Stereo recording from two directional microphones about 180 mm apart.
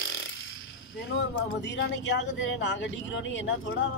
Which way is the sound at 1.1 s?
85° left.